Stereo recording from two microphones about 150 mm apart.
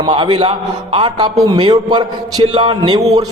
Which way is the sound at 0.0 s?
30° right (ahead or behind).